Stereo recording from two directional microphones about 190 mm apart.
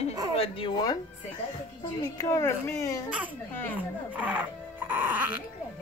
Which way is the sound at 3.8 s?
10° right (ahead or behind).